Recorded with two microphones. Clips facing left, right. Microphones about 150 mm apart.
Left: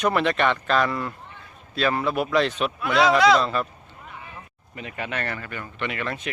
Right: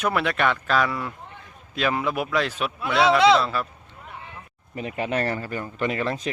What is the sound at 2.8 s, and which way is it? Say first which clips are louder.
Speech: even; 25° right (ahead or behind).